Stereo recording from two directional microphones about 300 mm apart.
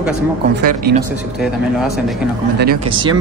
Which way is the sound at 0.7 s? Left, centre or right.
Right.